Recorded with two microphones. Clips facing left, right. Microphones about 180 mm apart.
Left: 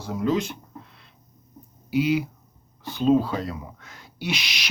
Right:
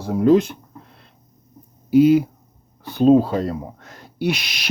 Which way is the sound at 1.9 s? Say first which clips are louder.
Right 9 dB; 50° right (ahead or behind).